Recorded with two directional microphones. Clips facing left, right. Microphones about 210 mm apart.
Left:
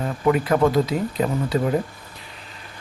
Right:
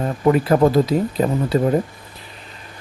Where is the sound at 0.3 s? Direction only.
35° right (ahead or behind).